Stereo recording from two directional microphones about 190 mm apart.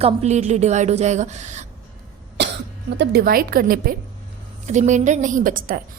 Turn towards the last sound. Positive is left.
turn(degrees=-45)  # may be behind; listen again after turning